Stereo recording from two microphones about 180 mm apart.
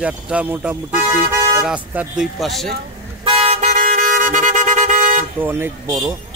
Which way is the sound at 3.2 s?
35° right (ahead or behind).